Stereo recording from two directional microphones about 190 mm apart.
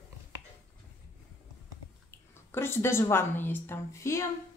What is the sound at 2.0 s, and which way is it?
Speech, 10° left (ahead or behind).